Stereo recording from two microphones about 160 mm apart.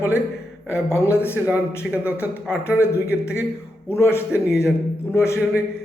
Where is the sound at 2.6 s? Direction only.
15° left (ahead or behind).